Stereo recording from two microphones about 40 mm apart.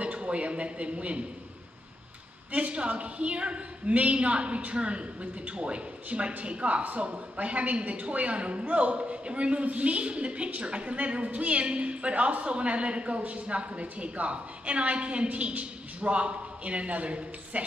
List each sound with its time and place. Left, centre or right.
0.0 s a man's voice: right
2.5 s a woman's voice: right